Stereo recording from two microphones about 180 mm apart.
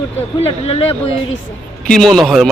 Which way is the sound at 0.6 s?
35° left (ahead or behind).